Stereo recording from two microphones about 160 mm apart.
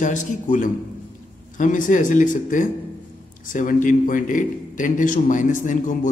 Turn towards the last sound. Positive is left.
turn(degrees=55)  # may be behind; listen again after turning